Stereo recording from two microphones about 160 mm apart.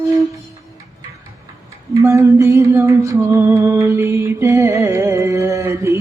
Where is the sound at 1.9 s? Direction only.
20° right (ahead or behind).